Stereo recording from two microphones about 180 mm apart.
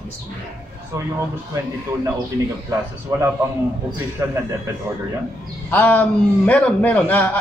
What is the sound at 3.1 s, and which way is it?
Speech, 20° right (ahead or behind).